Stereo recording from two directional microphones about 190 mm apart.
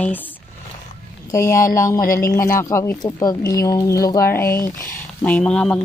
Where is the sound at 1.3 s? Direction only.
15° left (ahead or behind).